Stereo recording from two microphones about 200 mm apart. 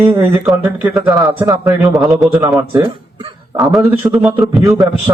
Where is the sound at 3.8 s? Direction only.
10° right (ahead or behind).